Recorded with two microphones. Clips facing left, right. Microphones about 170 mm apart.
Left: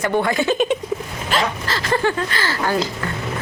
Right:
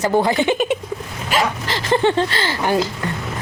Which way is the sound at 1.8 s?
25° right (ahead or behind).